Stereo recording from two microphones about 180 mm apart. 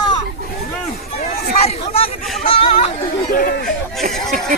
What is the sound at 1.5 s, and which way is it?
Chatter, 35° left (ahead or behind).